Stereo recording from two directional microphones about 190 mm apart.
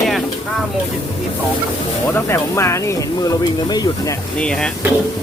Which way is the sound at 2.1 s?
15° left (ahead or behind).